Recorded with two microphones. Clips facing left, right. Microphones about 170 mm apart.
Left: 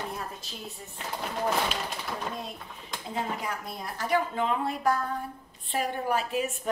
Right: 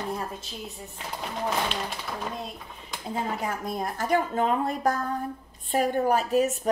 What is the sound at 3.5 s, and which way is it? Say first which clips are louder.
A woman's voice: right 6 dB; 50° right (ahead or behind).